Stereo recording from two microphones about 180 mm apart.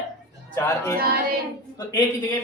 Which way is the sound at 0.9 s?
55° right (ahead or behind).